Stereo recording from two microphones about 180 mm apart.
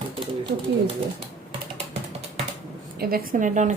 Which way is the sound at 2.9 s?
55° right (ahead or behind).